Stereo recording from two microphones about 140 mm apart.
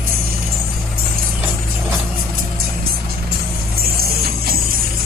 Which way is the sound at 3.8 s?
90° right.